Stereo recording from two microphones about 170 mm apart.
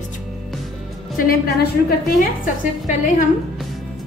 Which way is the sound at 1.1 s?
60° left (ahead or behind).